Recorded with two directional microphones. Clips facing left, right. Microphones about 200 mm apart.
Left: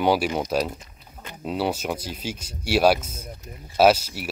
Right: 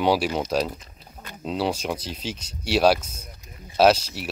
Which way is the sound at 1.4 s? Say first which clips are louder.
Even; 5° left (ahead or behind).